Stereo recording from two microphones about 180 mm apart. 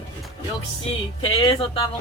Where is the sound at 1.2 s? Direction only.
30° left (ahead or behind).